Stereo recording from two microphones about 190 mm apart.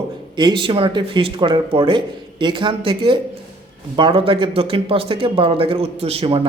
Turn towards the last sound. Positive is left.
turn(degrees=-25)  # may be behind; listen again after turning